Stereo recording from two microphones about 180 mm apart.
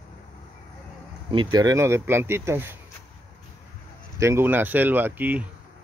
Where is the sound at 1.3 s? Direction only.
25° right (ahead or behind).